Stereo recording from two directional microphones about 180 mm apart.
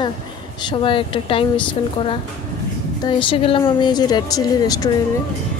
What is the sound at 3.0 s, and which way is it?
A woman's voice, 25° left (ahead or behind).